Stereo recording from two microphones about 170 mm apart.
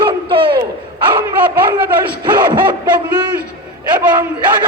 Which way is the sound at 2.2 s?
25° right (ahead or behind).